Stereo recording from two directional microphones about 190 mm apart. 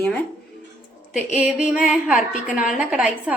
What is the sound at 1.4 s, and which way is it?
A woman's voice, 5° right (ahead or behind).